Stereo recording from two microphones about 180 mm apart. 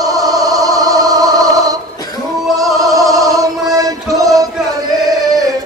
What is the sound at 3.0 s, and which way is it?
Music, 20° right (ahead or behind).